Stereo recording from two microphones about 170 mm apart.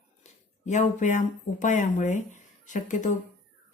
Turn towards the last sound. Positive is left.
turn(degrees=45)  # may be behind; listen again after turning